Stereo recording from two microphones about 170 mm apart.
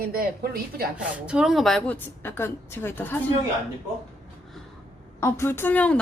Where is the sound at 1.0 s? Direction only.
5° right (ahead or behind); by 3.2 s 10° left (ahead or behind).